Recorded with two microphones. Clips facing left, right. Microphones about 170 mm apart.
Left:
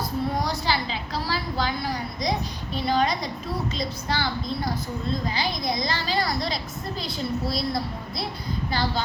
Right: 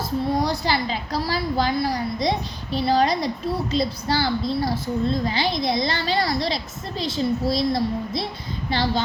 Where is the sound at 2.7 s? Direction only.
35° right (ahead or behind).